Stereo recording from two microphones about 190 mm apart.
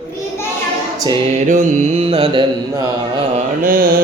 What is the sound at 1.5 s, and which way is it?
Mantra, 35° right (ahead or behind).